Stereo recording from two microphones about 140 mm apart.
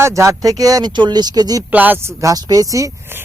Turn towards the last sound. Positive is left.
turn(degrees=-25)  # may be behind; listen again after turning